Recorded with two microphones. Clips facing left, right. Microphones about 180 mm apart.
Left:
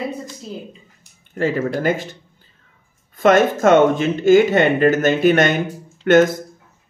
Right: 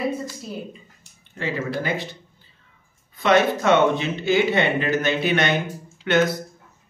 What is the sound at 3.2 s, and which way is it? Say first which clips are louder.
Speech: left 4 dB; 45° left (ahead or behind).